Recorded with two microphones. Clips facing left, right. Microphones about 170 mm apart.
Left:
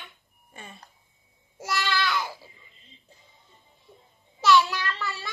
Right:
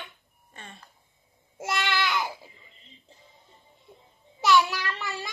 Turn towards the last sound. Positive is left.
turn(degrees=-15)  # may be behind; listen again after turning